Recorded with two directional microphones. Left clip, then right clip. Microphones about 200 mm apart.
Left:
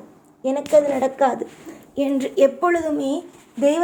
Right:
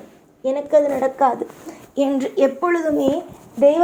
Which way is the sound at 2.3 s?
5° left (ahead or behind).